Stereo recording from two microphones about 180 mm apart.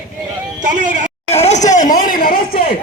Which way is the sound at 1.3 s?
35° left (ahead or behind).